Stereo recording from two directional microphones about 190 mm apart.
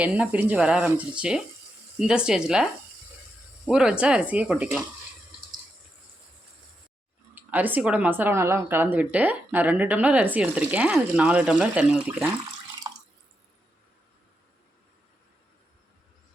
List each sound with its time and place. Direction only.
0.0 s speech: 5° right (ahead or behind)
3.7 s speech: 5° right (ahead or behind)
7.3 s speech: 10° right (ahead or behind)
12.9 s drip: 20° right (ahead or behind)